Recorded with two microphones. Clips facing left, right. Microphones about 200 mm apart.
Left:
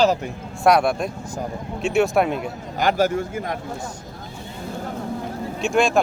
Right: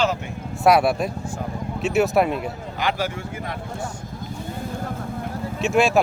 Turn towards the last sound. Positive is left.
turn(degrees=-5)  # may be behind; listen again after turning